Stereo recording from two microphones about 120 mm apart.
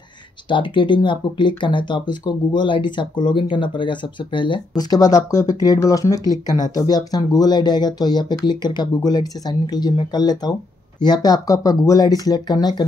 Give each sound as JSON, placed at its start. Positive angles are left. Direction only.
{"t": 0.5, "sound": "speech", "side_deg": 40}